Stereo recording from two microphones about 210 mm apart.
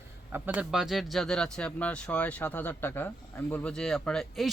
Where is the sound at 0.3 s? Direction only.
10° right (ahead or behind).